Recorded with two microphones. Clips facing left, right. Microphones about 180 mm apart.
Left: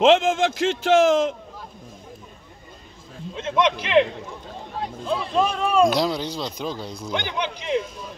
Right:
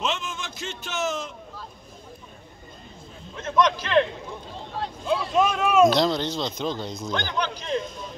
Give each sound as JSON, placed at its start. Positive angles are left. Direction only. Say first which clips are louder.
{"t": 0.0, "sound": "a man's voice", "louder": "left 14 dB", "side_deg": 90}
{"t": 3.3, "sound": "speech", "louder": "left 1 dB", "side_deg": 25}
{"t": 4.8, "sound": "speech", "louder": "right 1 dB", "side_deg": 0}
{"t": 5.9, "sound": "speech", "louder": "right 1 dB", "side_deg": 10}